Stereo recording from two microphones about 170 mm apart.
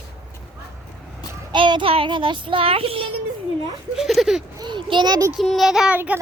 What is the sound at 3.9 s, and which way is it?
Speech, centre (ahead or behind).